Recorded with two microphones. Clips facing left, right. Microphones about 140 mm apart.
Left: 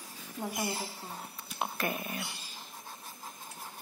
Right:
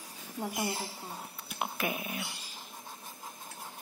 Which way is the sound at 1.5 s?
5° right (ahead or behind).